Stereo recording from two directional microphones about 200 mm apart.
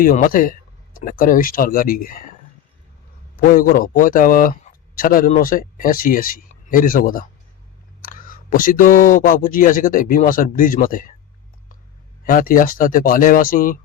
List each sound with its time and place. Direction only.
0.0 s speech: 45° left (ahead or behind)
3.4 s a man's voice: 45° left (ahead or behind)
12.2 s speech: 45° left (ahead or behind)